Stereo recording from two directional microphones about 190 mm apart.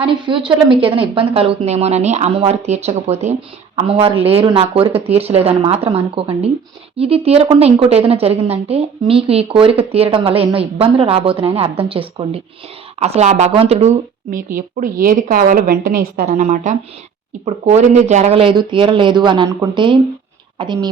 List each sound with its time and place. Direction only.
0.0 s speech: 25° right (ahead or behind)